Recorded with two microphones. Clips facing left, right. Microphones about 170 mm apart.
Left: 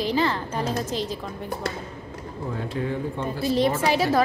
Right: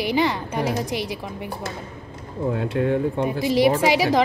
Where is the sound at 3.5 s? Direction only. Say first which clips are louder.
Right 4 dB; 75° right (ahead or behind).